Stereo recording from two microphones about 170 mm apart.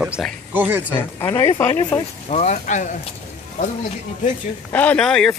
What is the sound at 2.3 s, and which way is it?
Speech, 40° left (ahead or behind).